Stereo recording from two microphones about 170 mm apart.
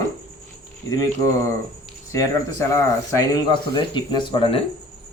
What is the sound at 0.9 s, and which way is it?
Speech, 20° left (ahead or behind).